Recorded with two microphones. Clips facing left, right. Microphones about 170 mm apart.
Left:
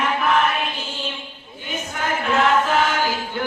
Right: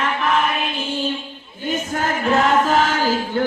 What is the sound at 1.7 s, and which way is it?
Music, 45° right (ahead or behind).